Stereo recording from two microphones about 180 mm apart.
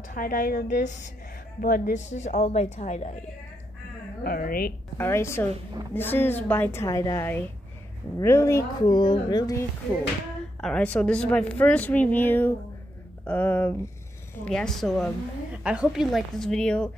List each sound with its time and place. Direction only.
0.1 s a woman's voice: 45° left (ahead or behind)
4.2 s a woman's voice: 55° left (ahead or behind)
4.9 s a woman's voice: 15° left (ahead or behind)
10.6 s a woman's voice: 5° left (ahead or behind)